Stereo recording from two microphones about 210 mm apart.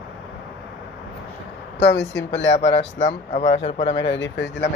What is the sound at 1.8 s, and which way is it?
Speech, 55° left (ahead or behind).